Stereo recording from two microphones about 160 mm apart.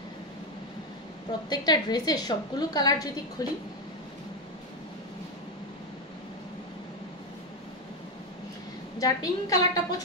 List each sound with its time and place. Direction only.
1.5 s a woman's voice: 25° left (ahead or behind)
9.0 s a woman's voice: 20° left (ahead or behind)